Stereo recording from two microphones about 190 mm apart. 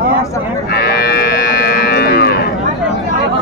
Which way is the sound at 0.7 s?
55° left (ahead or behind).